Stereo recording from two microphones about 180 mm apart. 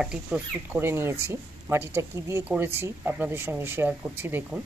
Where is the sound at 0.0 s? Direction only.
5° right (ahead or behind).